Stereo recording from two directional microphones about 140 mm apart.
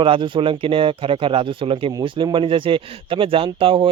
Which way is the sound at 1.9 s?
30° right (ahead or behind).